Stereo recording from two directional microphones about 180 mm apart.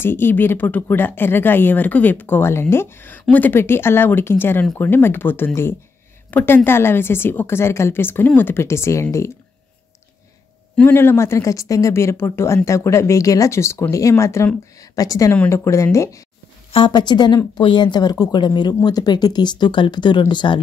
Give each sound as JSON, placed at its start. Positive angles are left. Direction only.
{"t": 0.0, "sound": "speech", "side_deg": 10}
{"t": 10.8, "sound": "speech", "side_deg": 10}